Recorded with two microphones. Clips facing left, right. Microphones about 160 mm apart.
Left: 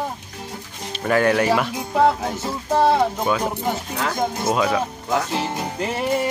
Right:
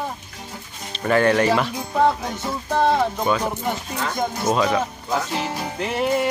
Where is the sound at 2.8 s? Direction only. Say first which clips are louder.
Left 1 dB; 10° left (ahead or behind).